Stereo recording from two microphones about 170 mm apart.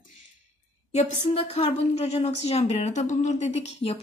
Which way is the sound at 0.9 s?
35° left (ahead or behind).